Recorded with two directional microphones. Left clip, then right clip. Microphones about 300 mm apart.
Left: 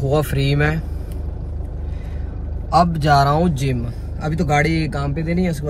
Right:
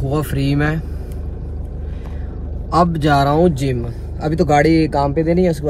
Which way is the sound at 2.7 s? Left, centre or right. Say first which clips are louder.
Even; centre.